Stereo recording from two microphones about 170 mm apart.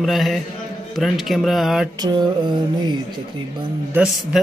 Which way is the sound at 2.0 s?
25° right (ahead or behind).